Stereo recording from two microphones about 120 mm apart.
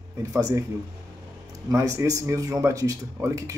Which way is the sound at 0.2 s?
30° right (ahead or behind).